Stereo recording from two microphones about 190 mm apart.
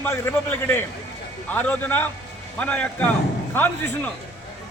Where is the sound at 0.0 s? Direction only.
10° left (ahead or behind).